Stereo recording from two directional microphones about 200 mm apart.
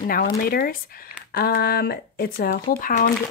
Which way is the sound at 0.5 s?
50° left (ahead or behind).